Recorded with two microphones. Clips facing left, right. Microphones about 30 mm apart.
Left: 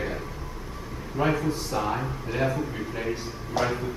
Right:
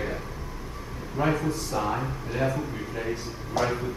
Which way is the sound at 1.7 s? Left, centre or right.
Centre.